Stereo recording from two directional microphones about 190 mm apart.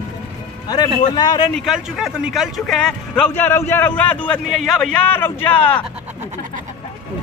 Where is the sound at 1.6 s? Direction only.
Centre (ahead or behind).